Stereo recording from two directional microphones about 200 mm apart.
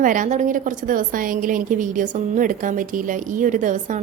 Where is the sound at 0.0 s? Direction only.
40° right (ahead or behind).